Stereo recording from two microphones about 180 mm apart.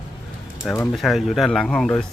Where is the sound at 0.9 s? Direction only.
Centre (ahead or behind).